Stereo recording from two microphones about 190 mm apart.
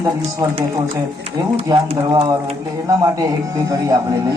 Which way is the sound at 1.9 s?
20° right (ahead or behind).